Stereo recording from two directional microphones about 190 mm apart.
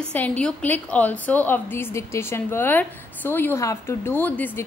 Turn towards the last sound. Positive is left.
turn(degrees=10)  # may be behind; listen again after turning